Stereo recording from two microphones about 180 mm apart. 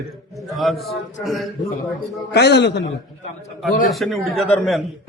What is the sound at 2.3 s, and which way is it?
Speech, 70° left (ahead or behind).